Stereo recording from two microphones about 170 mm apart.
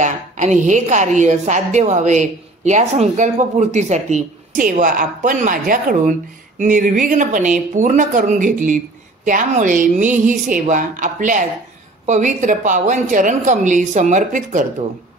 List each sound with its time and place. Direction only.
0.0 s a woman's voice: 45° right (ahead or behind)